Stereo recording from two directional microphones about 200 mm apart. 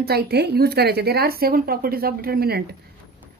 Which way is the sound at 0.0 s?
50° right (ahead or behind).